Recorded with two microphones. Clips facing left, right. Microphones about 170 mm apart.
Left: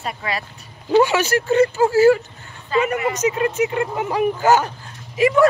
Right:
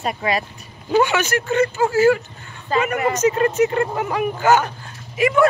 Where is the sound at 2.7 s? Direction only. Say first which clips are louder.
Left 1 dB; 40° right (ahead or behind).